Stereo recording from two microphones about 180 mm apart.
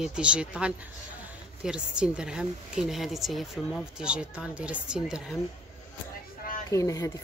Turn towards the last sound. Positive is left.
turn(degrees=20)  # may be behind; listen again after turning